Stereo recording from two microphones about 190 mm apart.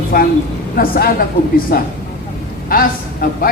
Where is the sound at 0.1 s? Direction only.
50° left (ahead or behind).